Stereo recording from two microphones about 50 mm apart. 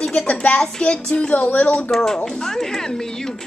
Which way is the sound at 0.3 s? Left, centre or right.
Left.